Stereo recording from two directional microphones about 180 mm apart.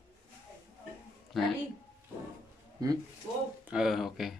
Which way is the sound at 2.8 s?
20° right (ahead or behind).